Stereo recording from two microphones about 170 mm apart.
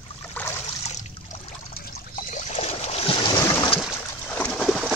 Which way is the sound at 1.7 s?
65° left (ahead or behind).